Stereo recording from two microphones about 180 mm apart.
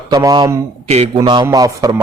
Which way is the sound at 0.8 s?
35° right (ahead or behind).